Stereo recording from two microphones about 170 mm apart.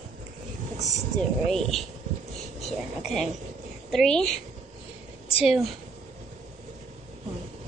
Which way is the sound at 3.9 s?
Centre (ahead or behind).